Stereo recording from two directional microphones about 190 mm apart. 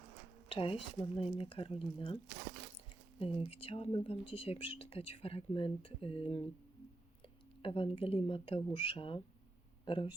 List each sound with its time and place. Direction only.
0.4 s speech: 30° left (ahead or behind)
3.2 s speech: 30° left (ahead or behind)
7.6 s speech: 30° left (ahead or behind)